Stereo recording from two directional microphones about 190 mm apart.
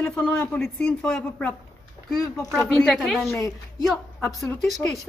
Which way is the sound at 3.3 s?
15° left (ahead or behind).